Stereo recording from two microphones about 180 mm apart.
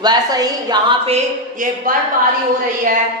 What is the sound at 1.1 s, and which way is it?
Speech, 45° right (ahead or behind).